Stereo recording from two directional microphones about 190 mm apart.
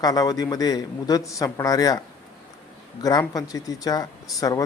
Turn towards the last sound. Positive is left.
turn(degrees=20)  # may be behind; listen again after turning